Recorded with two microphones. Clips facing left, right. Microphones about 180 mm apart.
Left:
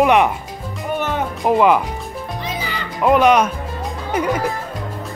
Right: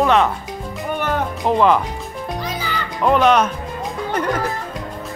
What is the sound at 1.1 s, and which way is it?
Music, 10° left (ahead or behind).